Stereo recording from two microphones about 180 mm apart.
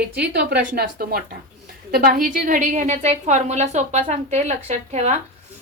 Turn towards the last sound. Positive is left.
turn(degrees=-40)  # may be behind; listen again after turning